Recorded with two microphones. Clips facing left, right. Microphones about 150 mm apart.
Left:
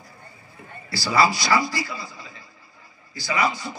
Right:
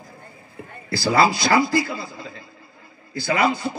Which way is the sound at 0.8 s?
55° right (ahead or behind).